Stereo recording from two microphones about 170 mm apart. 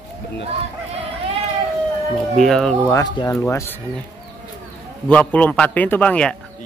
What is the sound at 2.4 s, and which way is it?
Speech, centre (ahead or behind).